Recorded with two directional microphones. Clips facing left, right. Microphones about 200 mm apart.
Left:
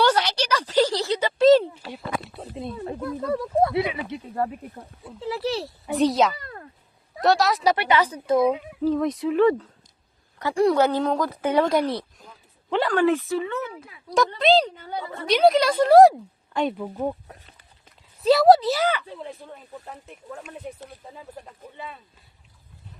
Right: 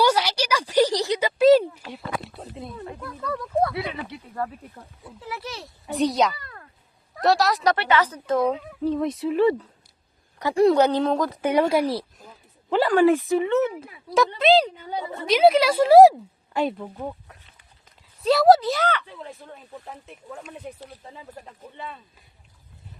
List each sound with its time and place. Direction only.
0.0 s a sound: 10° right (ahead or behind)
1.8 s a sound: centre (ahead or behind)
2.6 s snake: 30° left (ahead or behind)
3.1 s speech: 30° left (ahead or behind)
5.9 s a woman's voice: centre (ahead or behind)
10.3 s a woman's voice: 20° right (ahead or behind)
11.4 s speech: 10° right (ahead or behind)
14.3 s a woman's voice: 5° right (ahead or behind)
14.8 s a woman's voice: 20° right (ahead or behind)
15.3 s a woman's voice: centre (ahead or behind)
17.0 s speech: 25° left (ahead or behind)
18.2 s a woman's voice: centre (ahead or behind)